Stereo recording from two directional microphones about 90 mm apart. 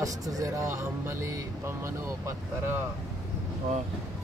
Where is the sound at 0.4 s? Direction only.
35° right (ahead or behind).